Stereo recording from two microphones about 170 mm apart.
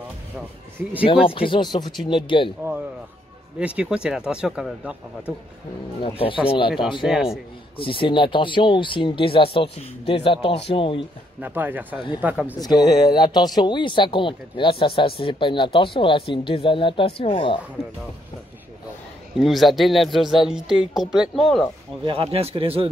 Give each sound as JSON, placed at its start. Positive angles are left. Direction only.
{"t": 1.0, "sound": "speech", "side_deg": 35}
{"t": 3.5, "sound": "speech", "side_deg": -5}
{"t": 6.0, "sound": "speech", "side_deg": 30}
{"t": 11.4, "sound": "speech", "side_deg": -10}
{"t": 12.5, "sound": "speech", "side_deg": 20}
{"t": 19.3, "sound": "speech", "side_deg": 0}
{"t": 22.0, "sound": "speech", "side_deg": -35}